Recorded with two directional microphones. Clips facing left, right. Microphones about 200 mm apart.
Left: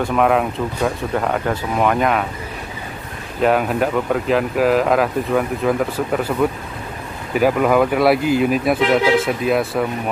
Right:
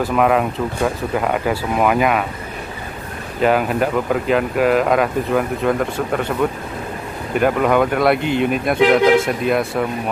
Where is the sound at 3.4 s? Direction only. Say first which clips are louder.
Even; centre (ahead or behind).